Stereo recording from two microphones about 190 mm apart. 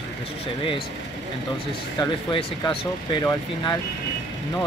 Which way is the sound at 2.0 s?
25° left (ahead or behind).